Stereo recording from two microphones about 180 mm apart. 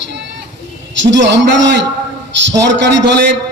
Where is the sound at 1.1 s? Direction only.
85° right.